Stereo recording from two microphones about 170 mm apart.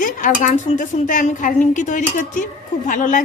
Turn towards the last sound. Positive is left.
turn(degrees=50)  # may be behind; listen again after turning